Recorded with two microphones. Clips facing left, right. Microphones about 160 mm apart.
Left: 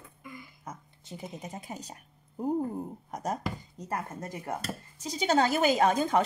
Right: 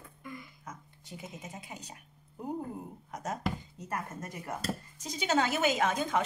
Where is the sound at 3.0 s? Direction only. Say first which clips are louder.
Even; 40° left (ahead or behind).